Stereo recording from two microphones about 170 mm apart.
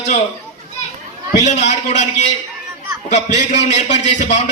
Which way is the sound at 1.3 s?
45° left (ahead or behind).